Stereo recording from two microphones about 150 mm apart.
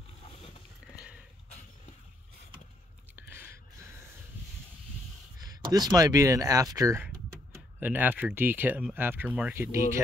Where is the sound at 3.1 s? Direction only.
15° right (ahead or behind).